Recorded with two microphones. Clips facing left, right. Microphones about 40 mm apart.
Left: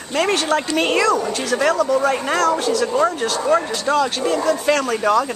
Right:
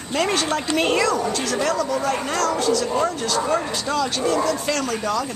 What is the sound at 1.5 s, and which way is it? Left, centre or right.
Speech, centre.